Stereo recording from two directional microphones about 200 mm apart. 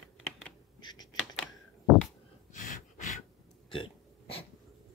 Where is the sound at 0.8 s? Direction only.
20° left (ahead or behind).